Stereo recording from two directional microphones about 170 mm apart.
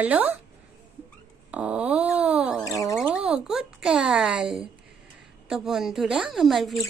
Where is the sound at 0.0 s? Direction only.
10° right (ahead or behind).